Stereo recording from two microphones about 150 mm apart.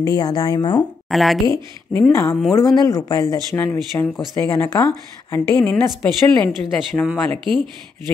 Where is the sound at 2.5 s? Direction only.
25° left (ahead or behind).